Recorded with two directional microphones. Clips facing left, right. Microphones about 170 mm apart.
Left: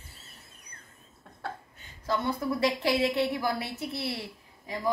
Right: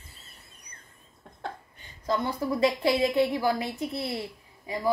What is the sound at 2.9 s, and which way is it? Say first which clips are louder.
Speech: right 2 dB; 10° right (ahead or behind).